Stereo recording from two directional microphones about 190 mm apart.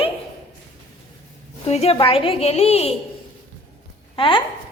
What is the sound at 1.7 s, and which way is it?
A woman's voice, 35° left (ahead or behind).